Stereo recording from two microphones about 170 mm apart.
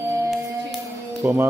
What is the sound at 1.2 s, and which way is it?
Speech, 15° right (ahead or behind).